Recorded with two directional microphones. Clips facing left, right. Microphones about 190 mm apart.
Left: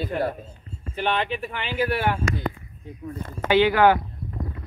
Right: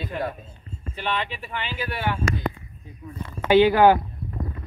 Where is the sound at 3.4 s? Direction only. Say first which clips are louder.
Right 2 dB; 20° right (ahead or behind).